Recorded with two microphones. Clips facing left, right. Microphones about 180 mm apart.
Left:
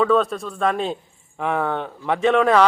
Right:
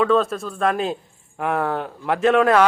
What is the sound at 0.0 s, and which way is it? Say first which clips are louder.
Speech: even; centre (ahead or behind).